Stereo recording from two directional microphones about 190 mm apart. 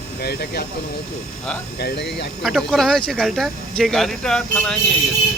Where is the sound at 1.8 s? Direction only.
60° left (ahead or behind).